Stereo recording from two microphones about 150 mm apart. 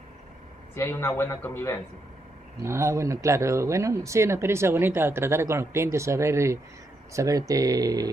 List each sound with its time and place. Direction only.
0.7 s a man's voice: 15° left (ahead or behind)
2.6 s speech: 20° right (ahead or behind)